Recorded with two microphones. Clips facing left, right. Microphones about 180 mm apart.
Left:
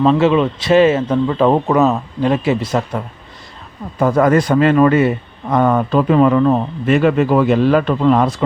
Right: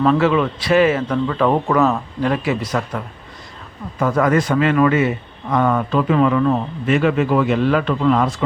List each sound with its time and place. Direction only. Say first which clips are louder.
0.0 s a man's voice: left 3 dB; 20° left (ahead or behind)
4.0 s a man's voice: left 4 dB; 35° left (ahead or behind)